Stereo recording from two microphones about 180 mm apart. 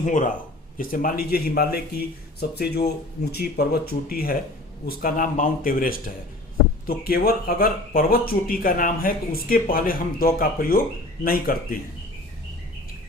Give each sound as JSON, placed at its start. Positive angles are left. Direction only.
{"t": 0.0, "sound": "speech", "side_deg": 45}